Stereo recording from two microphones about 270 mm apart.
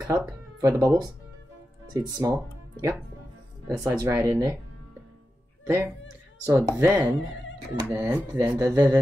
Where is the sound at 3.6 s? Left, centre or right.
Centre.